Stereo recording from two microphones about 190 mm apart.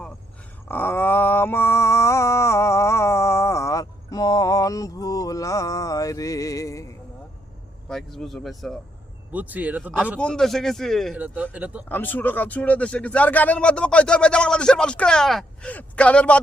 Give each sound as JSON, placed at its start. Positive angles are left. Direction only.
{"t": 0.7, "sound": "a sound", "side_deg": 10}
{"t": 7.9, "sound": "speech", "side_deg": 0}
{"t": 10.2, "sound": "speech", "side_deg": 5}
{"t": 11.9, "sound": "speech", "side_deg": 10}